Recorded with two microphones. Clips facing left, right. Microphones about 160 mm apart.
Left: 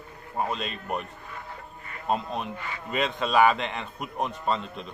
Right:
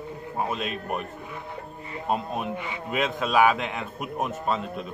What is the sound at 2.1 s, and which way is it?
Speech, 5° right (ahead or behind).